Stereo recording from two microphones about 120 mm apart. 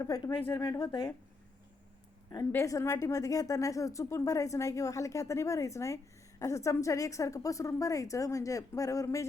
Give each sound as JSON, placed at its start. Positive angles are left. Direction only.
{"t": 0.0, "sound": "a woman's voice", "side_deg": 30}
{"t": 2.5, "sound": "a woman's voice", "side_deg": 25}